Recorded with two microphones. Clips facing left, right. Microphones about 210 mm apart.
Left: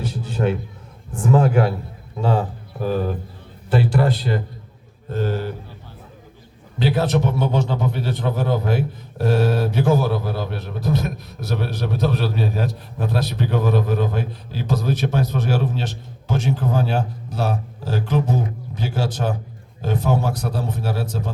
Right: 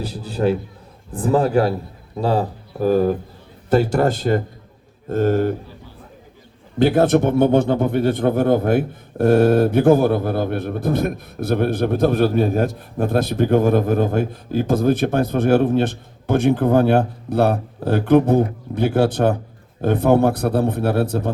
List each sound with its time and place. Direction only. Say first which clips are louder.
0.0 s a man's voice: right 2 dB; 35° right (ahead or behind)
6.7 s a man's voice: right 6 dB; 50° right (ahead or behind)